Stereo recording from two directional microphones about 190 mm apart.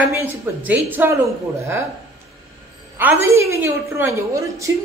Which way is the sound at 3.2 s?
15° right (ahead or behind).